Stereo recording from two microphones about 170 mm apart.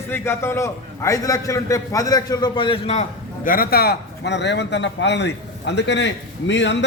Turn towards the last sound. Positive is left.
turn(degrees=90)